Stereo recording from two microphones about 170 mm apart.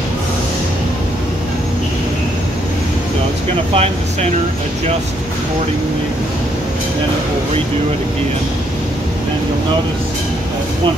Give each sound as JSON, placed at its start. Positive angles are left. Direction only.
{"t": 3.7, "sound": "speech", "side_deg": -40}